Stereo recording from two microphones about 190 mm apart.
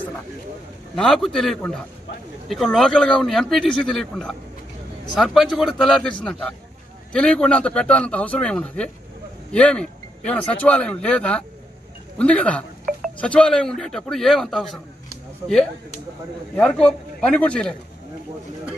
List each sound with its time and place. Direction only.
0.9 s speech: 5° left (ahead or behind)
15.4 s speech: 15° right (ahead or behind)
16.5 s speech: 5° left (ahead or behind)